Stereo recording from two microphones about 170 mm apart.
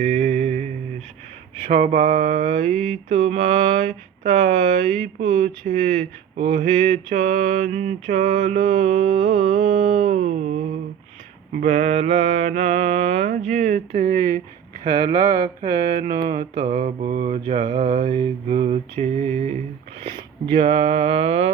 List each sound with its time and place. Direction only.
0.0 s mantra: 40° right (ahead or behind)
2.7 s mantra: 5° left (ahead or behind)
3.1 s mantra: 50° right (ahead or behind)
11.6 s mantra: 45° right (ahead or behind)
14.8 s mantra: 25° right (ahead or behind); by 17.3 s 45° right (ahead or behind)
17.3 s mantra: 35° right (ahead or behind)
20.1 s mantra: 30° right (ahead or behind)